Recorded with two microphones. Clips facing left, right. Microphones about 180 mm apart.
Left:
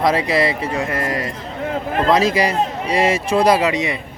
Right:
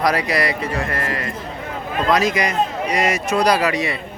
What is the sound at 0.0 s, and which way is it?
Speech, 25° left (ahead or behind).